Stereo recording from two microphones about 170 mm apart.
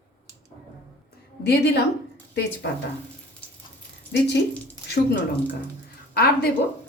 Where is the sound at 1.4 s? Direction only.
75° left (ahead or behind).